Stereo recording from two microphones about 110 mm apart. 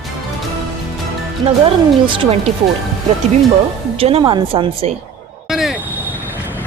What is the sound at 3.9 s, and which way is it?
Speech, 60° right (ahead or behind).